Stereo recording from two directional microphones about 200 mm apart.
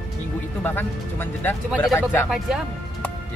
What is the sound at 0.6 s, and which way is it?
Speech, 10° left (ahead or behind).